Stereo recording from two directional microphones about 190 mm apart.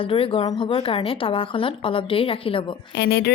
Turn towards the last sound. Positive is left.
turn(degrees=60)  # may be behind; listen again after turning